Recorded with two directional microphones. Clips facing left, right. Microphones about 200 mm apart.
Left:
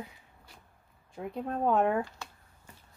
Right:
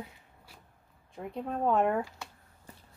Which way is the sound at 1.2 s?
Centre (ahead or behind).